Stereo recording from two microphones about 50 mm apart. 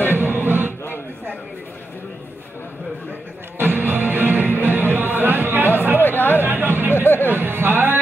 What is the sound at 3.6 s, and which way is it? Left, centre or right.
Music, right.